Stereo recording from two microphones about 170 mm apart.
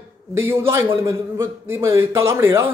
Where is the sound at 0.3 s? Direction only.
15° right (ahead or behind).